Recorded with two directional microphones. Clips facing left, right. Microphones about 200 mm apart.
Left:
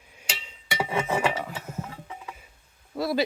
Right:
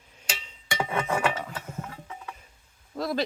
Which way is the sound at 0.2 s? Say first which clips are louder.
Right 1 dB; 10° left (ahead or behind).